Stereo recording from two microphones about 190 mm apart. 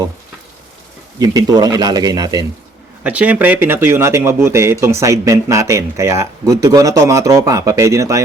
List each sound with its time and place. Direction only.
1.2 s a man's voice: 20° right (ahead or behind)
3.0 s speech: 5° right (ahead or behind)